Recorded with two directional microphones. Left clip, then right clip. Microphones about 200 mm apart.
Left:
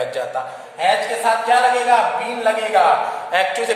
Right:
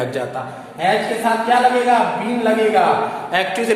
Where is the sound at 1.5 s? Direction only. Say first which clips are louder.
Right 1 dB; centre (ahead or behind).